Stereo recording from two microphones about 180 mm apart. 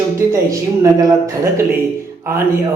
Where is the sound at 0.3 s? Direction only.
20° right (ahead or behind).